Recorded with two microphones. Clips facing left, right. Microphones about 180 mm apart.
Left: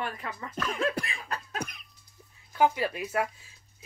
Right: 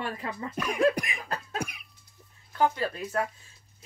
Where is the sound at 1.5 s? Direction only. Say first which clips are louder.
Right 2 dB; 10° right (ahead or behind).